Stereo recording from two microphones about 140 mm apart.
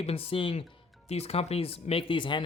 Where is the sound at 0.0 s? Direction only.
45° left (ahead or behind).